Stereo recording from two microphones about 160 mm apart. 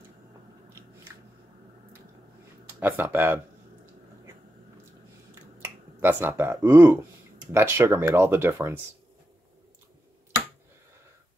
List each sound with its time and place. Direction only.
2.8 s speech: 15° right (ahead or behind)
5.3 s finger snapping: 10° right (ahead or behind)
7.5 s speech: 15° right (ahead or behind)